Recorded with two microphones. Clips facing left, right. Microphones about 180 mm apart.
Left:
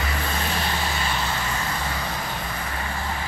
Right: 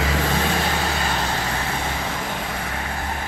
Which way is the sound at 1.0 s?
50° right (ahead or behind).